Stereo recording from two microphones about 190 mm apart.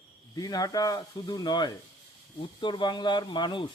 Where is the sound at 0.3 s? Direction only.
20° left (ahead or behind).